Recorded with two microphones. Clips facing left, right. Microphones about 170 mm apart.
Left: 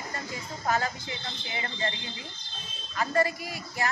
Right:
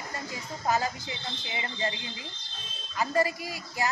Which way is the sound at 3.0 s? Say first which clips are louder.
Even; 15° right (ahead or behind).